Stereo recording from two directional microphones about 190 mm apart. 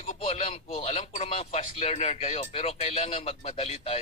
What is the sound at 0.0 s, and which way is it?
Speech, 30° left (ahead or behind).